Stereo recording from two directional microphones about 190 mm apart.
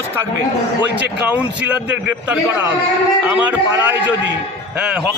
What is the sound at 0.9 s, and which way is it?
Speech, 65° right (ahead or behind).